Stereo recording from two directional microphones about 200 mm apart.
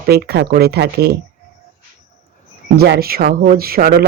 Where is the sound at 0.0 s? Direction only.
50° right (ahead or behind).